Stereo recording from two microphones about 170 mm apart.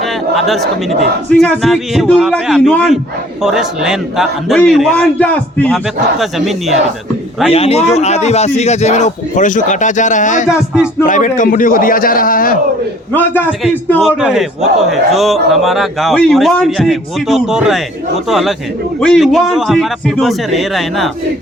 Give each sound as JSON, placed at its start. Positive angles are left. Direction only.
{"t": 0.0, "sound": "a sound", "side_deg": 0}
{"t": 1.4, "sound": "a man's voice", "side_deg": 0}
{"t": 7.5, "sound": "a man's voice", "side_deg": 35}
{"t": 13.1, "sound": "a man's voice", "side_deg": 10}
{"t": 13.5, "sound": "a man's voice", "side_deg": -5}